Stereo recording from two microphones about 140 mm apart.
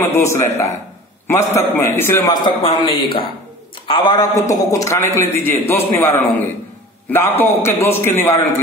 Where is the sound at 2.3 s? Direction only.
30° left (ahead or behind).